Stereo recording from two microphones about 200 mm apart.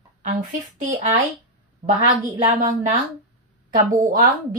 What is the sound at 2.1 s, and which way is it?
Speech, 25° right (ahead or behind).